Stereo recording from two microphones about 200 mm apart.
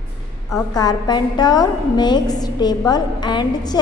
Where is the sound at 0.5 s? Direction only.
20° left (ahead or behind).